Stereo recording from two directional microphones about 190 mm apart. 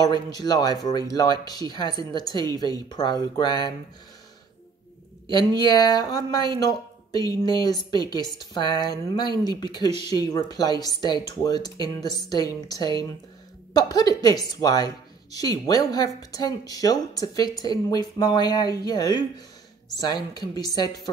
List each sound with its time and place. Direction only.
0.0 s speech: 20° left (ahead or behind)
5.3 s speech: 20° left (ahead or behind)